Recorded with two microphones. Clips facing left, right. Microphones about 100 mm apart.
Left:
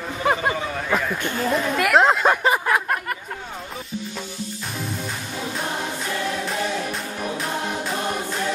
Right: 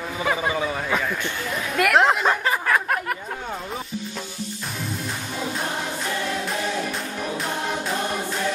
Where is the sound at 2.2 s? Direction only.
15° left (ahead or behind).